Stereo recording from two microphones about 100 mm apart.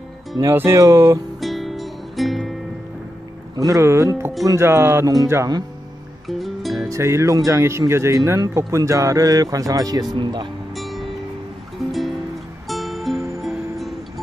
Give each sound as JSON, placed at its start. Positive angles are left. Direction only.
{"t": 0.5, "sound": "speech", "side_deg": -25}
{"t": 1.4, "sound": "music", "side_deg": 0}
{"t": 3.5, "sound": "speech", "side_deg": -35}
{"t": 5.0, "sound": "speech", "side_deg": -35}
{"t": 6.2, "sound": "music", "side_deg": 0}
{"t": 6.7, "sound": "speech", "side_deg": -30}
{"t": 10.1, "sound": "speech", "side_deg": -50}
{"t": 10.7, "sound": "music", "side_deg": 0}